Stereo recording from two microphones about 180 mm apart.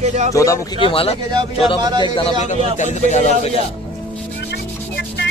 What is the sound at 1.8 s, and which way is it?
Speech, 25° right (ahead or behind).